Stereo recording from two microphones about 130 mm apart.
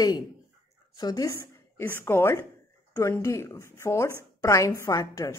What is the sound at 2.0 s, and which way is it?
A woman's voice, 15° left (ahead or behind).